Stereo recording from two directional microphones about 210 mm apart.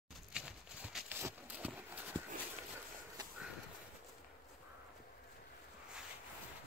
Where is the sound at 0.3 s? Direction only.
5° right (ahead or behind).